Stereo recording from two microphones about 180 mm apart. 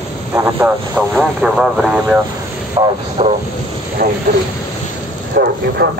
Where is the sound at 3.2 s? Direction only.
30° right (ahead or behind).